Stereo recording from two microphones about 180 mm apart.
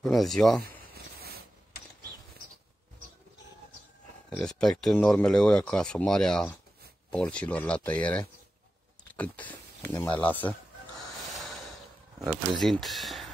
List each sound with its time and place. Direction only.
0.0 s speech: centre (ahead or behind)
0.7 s a sound: 60° right (ahead or behind)
4.3 s speech: 5° left (ahead or behind)
11.3 s snort: centre (ahead or behind)
12.5 s speech: centre (ahead or behind)